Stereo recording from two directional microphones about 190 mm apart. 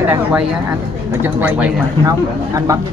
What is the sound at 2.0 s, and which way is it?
Speech, 15° right (ahead or behind).